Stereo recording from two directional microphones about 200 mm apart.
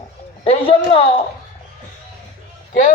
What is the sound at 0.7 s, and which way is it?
Speech, 30° left (ahead or behind).